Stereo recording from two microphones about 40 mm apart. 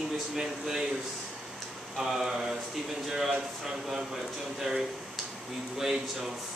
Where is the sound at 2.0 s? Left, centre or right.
Centre.